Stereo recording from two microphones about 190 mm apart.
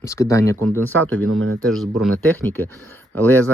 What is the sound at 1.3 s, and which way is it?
Speech, 90° right.